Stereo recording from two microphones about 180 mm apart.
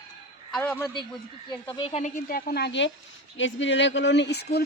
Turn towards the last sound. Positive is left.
turn(degrees=65)  # may be behind; listen again after turning